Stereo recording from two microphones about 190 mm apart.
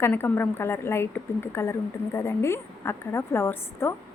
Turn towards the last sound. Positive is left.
turn(degrees=15)  # may be behind; listen again after turning